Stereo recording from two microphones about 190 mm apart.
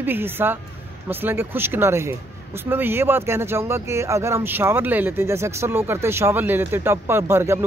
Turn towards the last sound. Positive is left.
turn(degrees=-15)  # may be behind; listen again after turning